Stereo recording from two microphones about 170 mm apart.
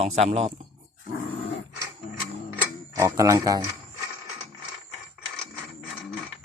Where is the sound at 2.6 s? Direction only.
15° right (ahead or behind).